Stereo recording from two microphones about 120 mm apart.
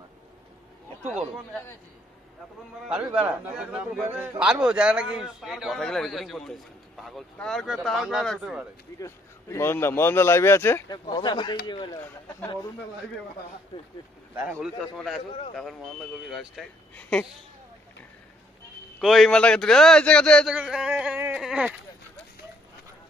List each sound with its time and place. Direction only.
2.9 s a man's voice: 10° right (ahead or behind)
9.0 s a man's voice: 25° left (ahead or behind)
10.9 s speech: 40° left (ahead or behind)
13.7 s speech: 40° left (ahead or behind)
14.6 s a man's voice: centre (ahead or behind)
16.3 s a man's voice: centre (ahead or behind)
18.9 s a man's voice: centre (ahead or behind)
20.4 s a man's voice: 5° right (ahead or behind)